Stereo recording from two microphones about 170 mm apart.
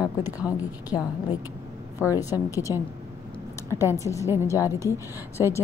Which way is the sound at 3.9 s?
20° left (ahead or behind).